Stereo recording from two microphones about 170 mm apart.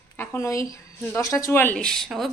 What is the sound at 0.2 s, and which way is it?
A woman's voice, 15° left (ahead or behind).